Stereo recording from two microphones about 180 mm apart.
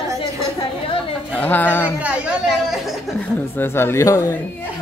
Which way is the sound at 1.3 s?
10° left (ahead or behind).